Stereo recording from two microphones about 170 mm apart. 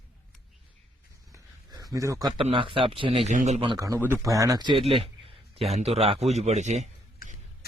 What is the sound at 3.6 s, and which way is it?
Speech, 30° right (ahead or behind).